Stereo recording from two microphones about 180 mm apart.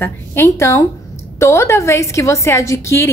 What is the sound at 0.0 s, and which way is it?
A woman's voice, 15° left (ahead or behind).